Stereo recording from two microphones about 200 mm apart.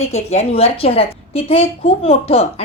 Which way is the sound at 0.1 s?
35° left (ahead or behind).